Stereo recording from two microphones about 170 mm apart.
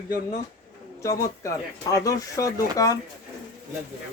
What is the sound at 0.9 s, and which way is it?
Speech, 20° left (ahead or behind).